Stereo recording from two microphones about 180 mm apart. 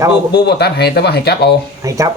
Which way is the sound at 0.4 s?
65° left (ahead or behind).